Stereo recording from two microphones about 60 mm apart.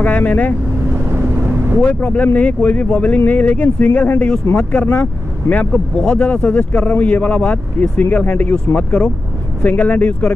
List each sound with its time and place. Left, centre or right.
0.0 s speech: left
1.9 s speech: left